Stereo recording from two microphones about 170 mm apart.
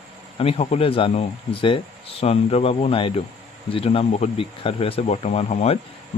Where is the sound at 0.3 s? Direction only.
35° left (ahead or behind).